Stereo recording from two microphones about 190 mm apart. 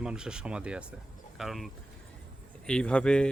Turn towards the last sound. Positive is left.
turn(degrees=5)  # may be behind; listen again after turning